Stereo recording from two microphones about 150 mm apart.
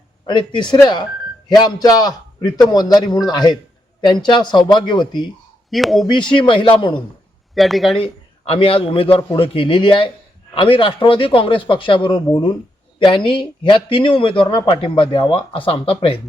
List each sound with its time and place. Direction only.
0.3 s a man's voice: 30° left (ahead or behind)
5.7 s speech: centre (ahead or behind)
6.2 s speech: 30° left (ahead or behind)
7.5 s speech: centre (ahead or behind)
7.9 s speech: 35° left (ahead or behind)